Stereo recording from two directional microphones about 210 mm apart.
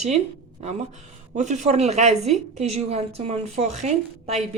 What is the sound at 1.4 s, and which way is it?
Speech, 35° right (ahead or behind).